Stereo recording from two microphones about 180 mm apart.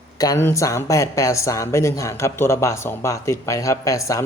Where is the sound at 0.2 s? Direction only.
15° left (ahead or behind).